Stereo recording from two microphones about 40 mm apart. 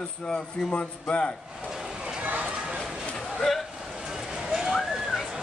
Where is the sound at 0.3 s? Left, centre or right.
Left.